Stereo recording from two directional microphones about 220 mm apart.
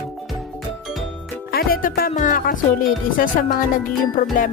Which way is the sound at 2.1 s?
35° left (ahead or behind).